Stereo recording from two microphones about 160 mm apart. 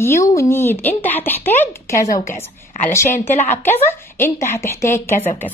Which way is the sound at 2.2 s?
50° left (ahead or behind).